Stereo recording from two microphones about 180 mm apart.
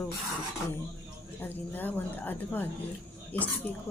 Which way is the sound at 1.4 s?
10° left (ahead or behind).